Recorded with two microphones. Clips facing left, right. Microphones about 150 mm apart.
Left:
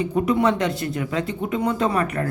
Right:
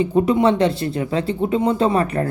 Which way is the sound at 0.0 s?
25° right (ahead or behind).